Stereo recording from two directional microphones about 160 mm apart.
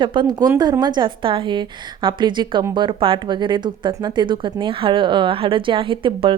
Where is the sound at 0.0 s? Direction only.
30° right (ahead or behind).